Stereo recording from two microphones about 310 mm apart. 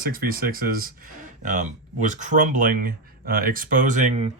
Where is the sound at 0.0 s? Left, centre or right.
Right.